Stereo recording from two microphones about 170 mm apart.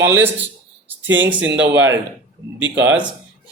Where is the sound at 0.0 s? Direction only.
15° right (ahead or behind).